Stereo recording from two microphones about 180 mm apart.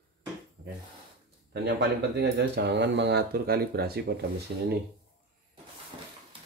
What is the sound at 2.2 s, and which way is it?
Speech, 70° right (ahead or behind).